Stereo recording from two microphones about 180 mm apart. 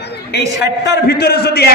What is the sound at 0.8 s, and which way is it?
Speech, 65° left (ahead or behind).